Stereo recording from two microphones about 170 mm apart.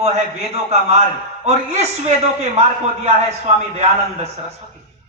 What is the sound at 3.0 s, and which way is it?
A man's voice, 40° right (ahead or behind).